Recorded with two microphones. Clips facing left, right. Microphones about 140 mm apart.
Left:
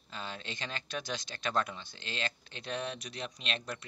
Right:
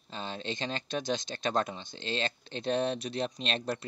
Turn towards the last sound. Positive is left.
turn(degrees=-35)  # may be behind; listen again after turning